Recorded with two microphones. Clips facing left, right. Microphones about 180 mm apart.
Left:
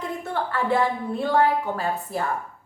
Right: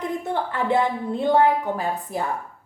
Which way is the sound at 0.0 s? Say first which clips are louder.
Right 2 dB; 20° right (ahead or behind).